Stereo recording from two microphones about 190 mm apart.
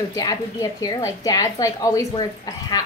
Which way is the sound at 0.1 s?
20° left (ahead or behind).